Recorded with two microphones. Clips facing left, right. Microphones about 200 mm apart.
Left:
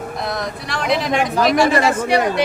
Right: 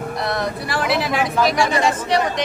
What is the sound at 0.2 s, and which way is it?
Speech, centre (ahead or behind).